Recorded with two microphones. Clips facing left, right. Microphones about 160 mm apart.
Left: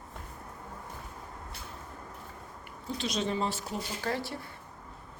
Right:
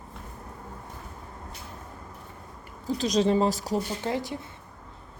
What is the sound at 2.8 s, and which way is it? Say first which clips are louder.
Speech: right 9 dB; 40° right (ahead or behind).